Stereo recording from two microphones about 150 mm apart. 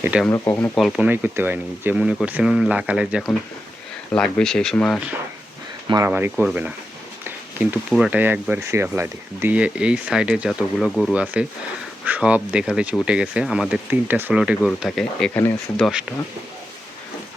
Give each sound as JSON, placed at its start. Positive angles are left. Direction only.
{"t": 0.0, "sound": "speech", "side_deg": -10}
{"t": 0.3, "sound": "speech", "side_deg": 20}
{"t": 0.8, "sound": "speech", "side_deg": -5}
{"t": 6.1, "sound": "speech", "side_deg": -10}